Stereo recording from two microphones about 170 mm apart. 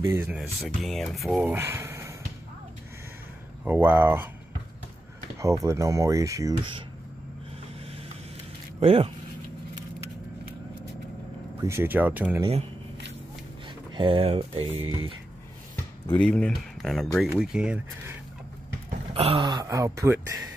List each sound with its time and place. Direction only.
0.0 s speech: 15° right (ahead or behind)
0.3 s speech: centre (ahead or behind)
1.5 s speech: 15° right (ahead or behind)
3.6 s speech: 10° right (ahead or behind)
5.4 s speech: 20° right (ahead or behind)
8.7 s speech: 35° right (ahead or behind)
11.6 s speech: 15° right (ahead or behind)
13.9 s speech: 30° right (ahead or behind)
16.1 s speech: 5° left (ahead or behind)
19.1 s speech: 35° right (ahead or behind); by 20.3 s 15° right (ahead or behind)